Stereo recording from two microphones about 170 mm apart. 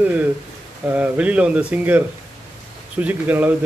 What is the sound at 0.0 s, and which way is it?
Speech, 10° right (ahead or behind).